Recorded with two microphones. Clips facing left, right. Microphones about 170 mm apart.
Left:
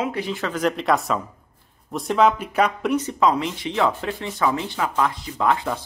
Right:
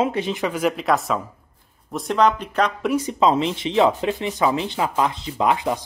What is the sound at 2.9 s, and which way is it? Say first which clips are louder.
Speech: right 1 dB; 10° right (ahead or behind).